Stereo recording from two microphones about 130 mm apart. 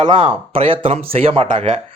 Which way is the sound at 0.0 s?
40° right (ahead or behind).